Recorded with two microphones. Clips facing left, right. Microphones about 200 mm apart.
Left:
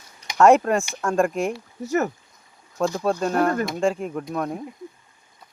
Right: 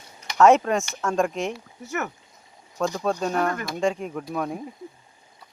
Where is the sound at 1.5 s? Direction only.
35° left (ahead or behind).